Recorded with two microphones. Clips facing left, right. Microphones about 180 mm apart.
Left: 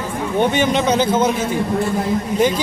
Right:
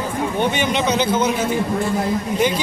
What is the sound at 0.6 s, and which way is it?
Speech, 45° left (ahead or behind).